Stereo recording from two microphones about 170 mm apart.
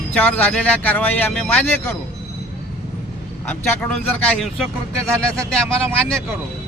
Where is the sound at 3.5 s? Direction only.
10° left (ahead or behind).